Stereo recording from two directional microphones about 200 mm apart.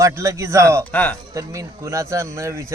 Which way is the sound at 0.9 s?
10° left (ahead or behind).